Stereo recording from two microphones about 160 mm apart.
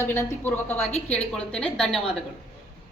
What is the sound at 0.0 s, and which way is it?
A woman's voice, 15° left (ahead or behind).